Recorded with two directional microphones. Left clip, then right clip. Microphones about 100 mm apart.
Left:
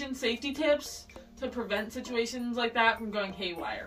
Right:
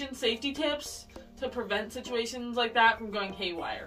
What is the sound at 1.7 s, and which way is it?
Speech, 15° right (ahead or behind).